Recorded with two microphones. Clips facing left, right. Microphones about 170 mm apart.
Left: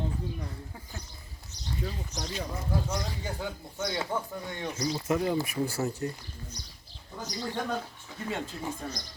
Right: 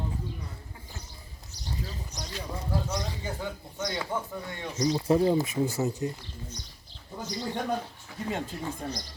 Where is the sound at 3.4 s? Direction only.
5° left (ahead or behind).